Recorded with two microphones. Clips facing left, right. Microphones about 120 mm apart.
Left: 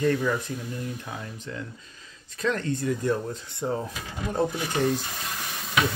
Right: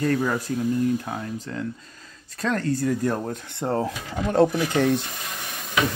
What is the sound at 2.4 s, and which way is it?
Speech, 40° right (ahead or behind).